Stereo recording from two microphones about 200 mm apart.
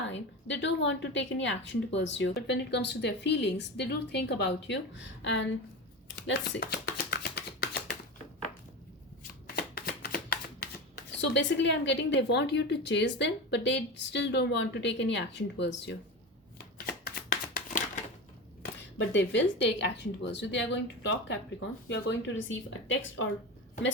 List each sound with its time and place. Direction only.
0.1 s a woman's voice: 65° left (ahead or behind)
6.1 s chopping: 60° left (ahead or behind)
9.6 s speech: 50° left (ahead or behind)
16.7 s shuffling cards: 50° left (ahead or behind)
18.6 s a woman's voice: 65° left (ahead or behind)
22.4 s a woman's voice: 70° left (ahead or behind)